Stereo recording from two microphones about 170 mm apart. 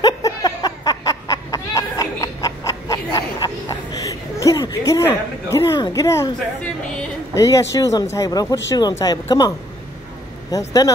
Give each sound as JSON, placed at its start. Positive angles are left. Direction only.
{"t": 0.0, "sound": "a sound", "side_deg": 20}
{"t": 7.3, "sound": "speech", "side_deg": 20}
{"t": 10.5, "sound": "speech", "side_deg": 20}